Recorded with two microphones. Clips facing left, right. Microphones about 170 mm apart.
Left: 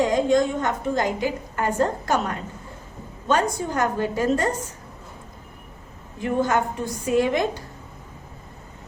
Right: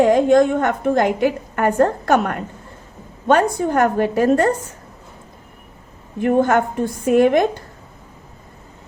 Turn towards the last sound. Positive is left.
turn(degrees=-55)  # may be behind; listen again after turning